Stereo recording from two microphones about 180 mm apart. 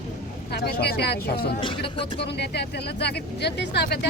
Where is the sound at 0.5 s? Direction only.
65° left (ahead or behind).